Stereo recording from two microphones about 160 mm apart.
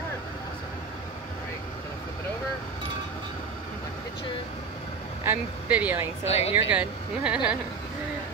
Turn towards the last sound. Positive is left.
turn(degrees=-5)  # may be behind; listen again after turning